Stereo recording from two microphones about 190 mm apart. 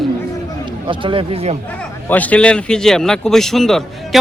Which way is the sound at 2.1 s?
10° left (ahead or behind).